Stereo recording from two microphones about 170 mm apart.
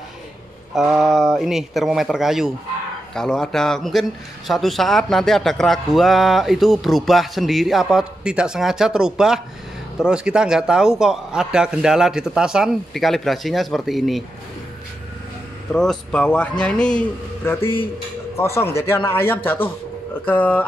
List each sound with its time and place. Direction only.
0.7 s speech: centre (ahead or behind)
15.7 s a man's voice: 5° left (ahead or behind)